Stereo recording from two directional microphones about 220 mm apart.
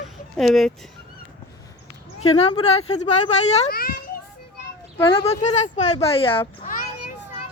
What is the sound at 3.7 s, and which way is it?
Children playing, 40° left (ahead or behind).